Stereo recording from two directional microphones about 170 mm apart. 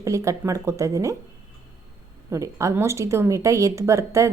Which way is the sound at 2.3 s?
20° right (ahead or behind).